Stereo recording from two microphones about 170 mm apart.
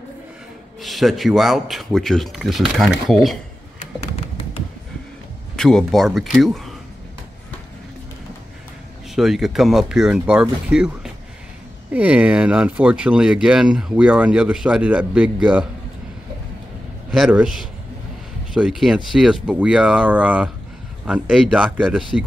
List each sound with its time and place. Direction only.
0.7 s speech: centre (ahead or behind)
5.6 s speech: 5° left (ahead or behind)
9.1 s speech: centre (ahead or behind)
11.9 s speech: 10° right (ahead or behind)
17.1 s speech: 5° right (ahead or behind)